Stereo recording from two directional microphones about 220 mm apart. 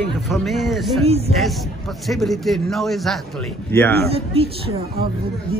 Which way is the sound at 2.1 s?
Centre (ahead or behind).